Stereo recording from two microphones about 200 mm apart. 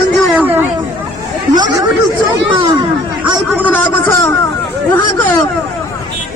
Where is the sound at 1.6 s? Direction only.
20° right (ahead or behind).